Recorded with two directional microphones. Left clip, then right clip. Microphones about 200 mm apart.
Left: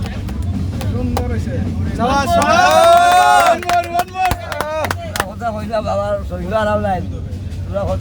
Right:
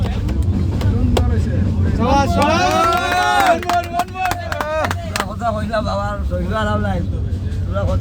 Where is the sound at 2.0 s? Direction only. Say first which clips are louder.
Left 2 dB; 55° left (ahead or behind); by 3.3 s 35° left (ahead or behind).